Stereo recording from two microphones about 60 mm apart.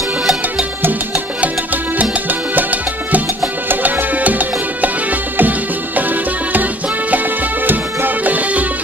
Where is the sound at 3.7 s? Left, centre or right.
Right.